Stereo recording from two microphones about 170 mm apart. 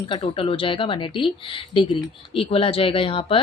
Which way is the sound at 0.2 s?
35° left (ahead or behind).